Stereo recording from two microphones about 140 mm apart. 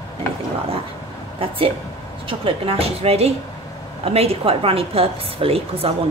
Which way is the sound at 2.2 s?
40° right (ahead or behind).